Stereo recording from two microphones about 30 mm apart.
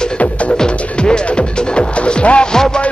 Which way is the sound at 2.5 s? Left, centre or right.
Centre.